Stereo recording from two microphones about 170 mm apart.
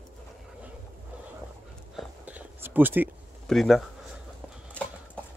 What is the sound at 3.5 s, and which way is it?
Speech, centre (ahead or behind).